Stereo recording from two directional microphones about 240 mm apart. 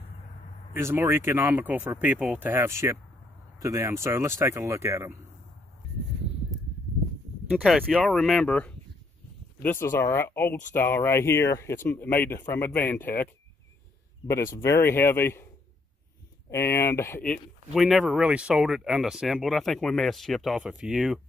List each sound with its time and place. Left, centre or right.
0.7 s speech: centre
7.6 s speech: centre